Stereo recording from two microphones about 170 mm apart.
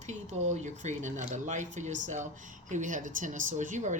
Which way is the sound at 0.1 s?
45° right (ahead or behind).